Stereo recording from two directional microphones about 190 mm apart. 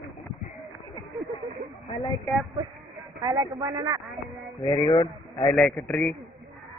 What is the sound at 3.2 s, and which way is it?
Speech, 20° right (ahead or behind).